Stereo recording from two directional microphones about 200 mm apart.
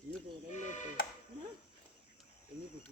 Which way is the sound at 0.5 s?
35° left (ahead or behind).